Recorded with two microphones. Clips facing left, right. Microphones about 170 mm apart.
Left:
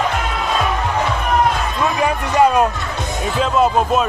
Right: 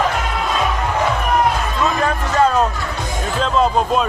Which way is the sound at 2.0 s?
15° left (ahead or behind).